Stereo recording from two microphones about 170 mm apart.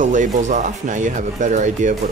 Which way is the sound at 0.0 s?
50° right (ahead or behind).